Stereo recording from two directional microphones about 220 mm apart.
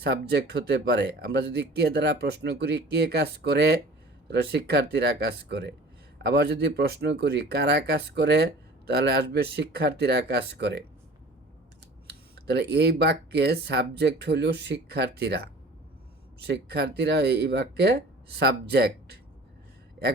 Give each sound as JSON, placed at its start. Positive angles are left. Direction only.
{"t": 0.0, "sound": "speech", "side_deg": -50}
{"t": 12.0, "sound": "speech", "side_deg": -50}